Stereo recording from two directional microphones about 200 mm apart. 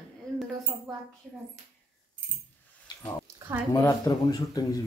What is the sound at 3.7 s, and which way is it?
A woman's voice, 15° left (ahead or behind).